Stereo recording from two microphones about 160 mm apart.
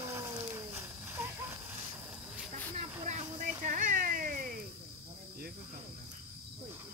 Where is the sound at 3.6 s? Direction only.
55° right (ahead or behind).